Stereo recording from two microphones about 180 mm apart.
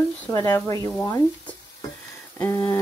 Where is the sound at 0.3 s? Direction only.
20° left (ahead or behind).